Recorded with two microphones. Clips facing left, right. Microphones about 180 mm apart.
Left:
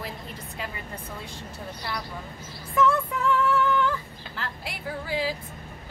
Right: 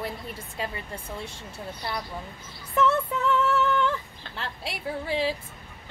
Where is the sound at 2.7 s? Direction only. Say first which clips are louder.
Even; 25° right (ahead or behind).